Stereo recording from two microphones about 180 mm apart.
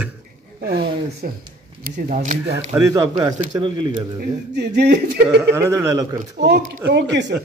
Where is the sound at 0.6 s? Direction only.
60° right (ahead or behind).